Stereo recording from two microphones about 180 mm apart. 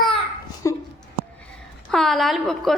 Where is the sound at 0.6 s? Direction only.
15° left (ahead or behind).